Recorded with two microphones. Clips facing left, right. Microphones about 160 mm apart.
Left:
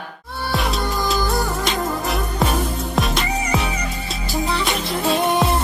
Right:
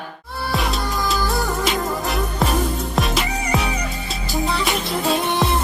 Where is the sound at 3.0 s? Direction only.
Centre (ahead or behind).